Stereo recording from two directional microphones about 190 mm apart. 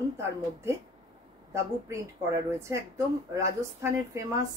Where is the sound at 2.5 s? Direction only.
15° right (ahead or behind).